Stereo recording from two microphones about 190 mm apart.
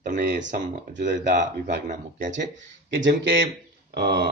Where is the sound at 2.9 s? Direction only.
75° right (ahead or behind).